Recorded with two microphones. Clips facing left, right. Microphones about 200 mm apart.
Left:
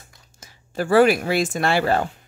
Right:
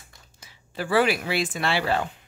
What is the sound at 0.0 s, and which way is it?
Speech, 45° left (ahead or behind).